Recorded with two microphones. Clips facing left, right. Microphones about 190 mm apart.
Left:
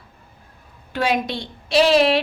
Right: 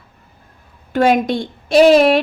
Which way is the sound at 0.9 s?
50° right (ahead or behind).